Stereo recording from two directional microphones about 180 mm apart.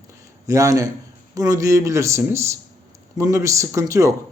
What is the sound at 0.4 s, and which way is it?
Speech, 20° right (ahead or behind).